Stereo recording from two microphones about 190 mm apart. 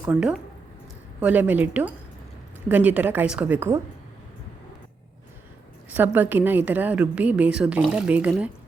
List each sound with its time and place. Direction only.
0.0 s a woman's voice: 5° right (ahead or behind)
5.9 s a woman's voice: 10° right (ahead or behind)